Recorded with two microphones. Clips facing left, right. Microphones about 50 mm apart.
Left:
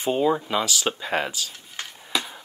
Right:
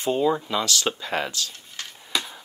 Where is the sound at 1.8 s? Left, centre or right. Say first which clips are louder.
Left 2 dB; left.